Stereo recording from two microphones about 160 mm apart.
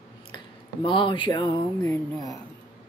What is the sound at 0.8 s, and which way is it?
Speech, 30° left (ahead or behind).